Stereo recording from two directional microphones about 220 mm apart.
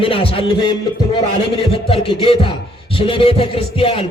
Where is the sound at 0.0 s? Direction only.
25° left (ahead or behind).